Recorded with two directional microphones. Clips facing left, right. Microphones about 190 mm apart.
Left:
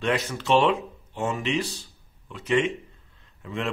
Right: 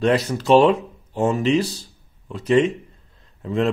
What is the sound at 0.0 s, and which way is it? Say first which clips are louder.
A man's voice: right 7 dB; 35° right (ahead or behind).